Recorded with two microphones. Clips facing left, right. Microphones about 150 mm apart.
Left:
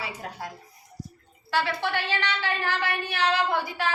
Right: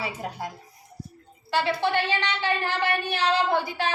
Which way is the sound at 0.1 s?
20° right (ahead or behind).